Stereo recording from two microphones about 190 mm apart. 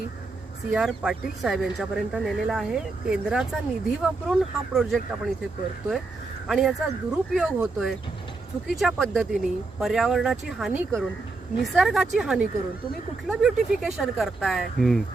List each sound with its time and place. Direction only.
0.7 s speech: 5° right (ahead or behind)
6.5 s speech: centre (ahead or behind)